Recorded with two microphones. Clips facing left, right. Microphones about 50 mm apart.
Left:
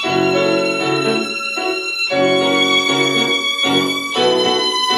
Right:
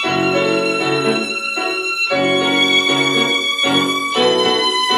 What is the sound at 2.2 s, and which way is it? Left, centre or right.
Violin, centre.